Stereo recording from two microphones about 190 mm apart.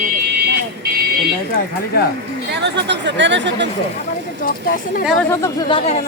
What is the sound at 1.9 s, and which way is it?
Speech, 55° left (ahead or behind).